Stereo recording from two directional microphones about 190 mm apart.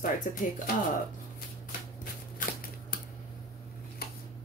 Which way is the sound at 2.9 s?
50° left (ahead or behind).